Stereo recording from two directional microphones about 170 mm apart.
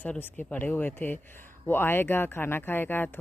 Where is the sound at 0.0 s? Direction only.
10° left (ahead or behind).